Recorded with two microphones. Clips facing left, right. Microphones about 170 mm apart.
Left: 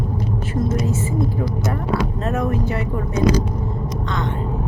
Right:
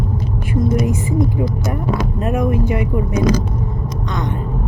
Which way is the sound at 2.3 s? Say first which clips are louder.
Right 5 dB; 15° right (ahead or behind).